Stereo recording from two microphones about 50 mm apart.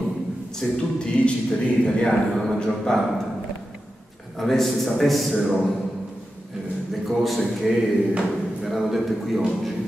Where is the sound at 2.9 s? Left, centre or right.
Centre.